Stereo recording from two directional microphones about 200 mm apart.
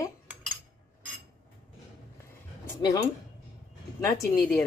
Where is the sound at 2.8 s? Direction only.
20° left (ahead or behind).